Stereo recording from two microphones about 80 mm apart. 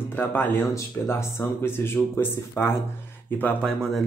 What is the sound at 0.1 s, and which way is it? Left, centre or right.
Speech, left.